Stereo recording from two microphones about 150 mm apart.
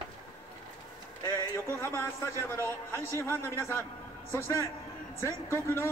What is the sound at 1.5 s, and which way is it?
A man's voice, 15° left (ahead or behind).